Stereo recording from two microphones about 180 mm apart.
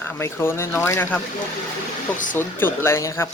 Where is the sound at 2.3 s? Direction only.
10° left (ahead or behind).